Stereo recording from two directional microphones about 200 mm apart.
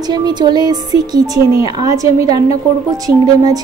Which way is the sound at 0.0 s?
20° right (ahead or behind).